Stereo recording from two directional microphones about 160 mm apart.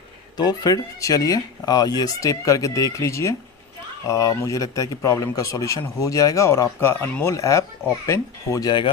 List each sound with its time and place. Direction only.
0.3 s speech: 25° left (ahead or behind)